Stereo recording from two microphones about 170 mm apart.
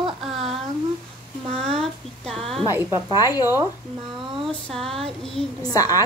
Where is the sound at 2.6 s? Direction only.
20° right (ahead or behind).